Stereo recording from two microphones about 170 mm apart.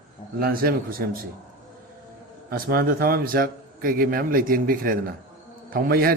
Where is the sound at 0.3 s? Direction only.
65° right (ahead or behind).